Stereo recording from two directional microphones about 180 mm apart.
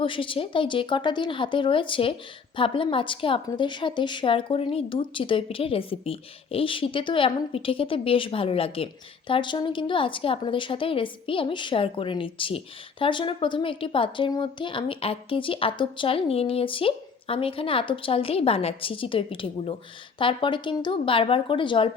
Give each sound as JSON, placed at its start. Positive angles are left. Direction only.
{"t": 0.0, "sound": "a woman's voice", "side_deg": 30}